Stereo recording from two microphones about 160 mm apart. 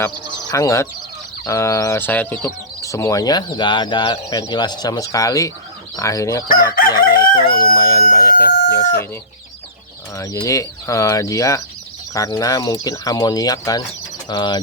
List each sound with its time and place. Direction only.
0.0 s speech: 20° left (ahead or behind)
6.7 s crowing: 65° left (ahead or behind)
7.5 s speech: 30° left (ahead or behind)
10.2 s speech: 20° left (ahead or behind)